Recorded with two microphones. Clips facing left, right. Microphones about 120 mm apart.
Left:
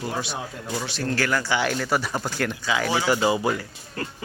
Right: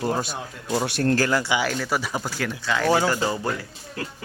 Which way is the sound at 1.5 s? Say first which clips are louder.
Left 1 dB; centre (ahead or behind).